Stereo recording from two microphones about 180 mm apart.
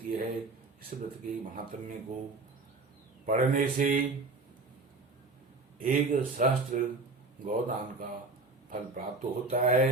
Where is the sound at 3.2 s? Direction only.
50° right (ahead or behind).